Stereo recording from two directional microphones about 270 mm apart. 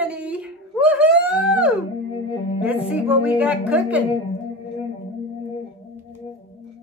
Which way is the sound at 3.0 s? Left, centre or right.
Centre.